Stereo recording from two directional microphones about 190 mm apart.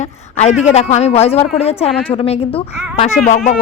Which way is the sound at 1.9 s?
10° left (ahead or behind).